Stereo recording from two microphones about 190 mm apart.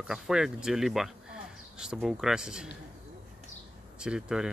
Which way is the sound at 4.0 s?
5° right (ahead or behind).